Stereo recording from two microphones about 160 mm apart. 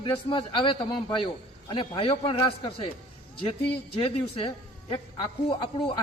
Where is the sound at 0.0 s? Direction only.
30° left (ahead or behind).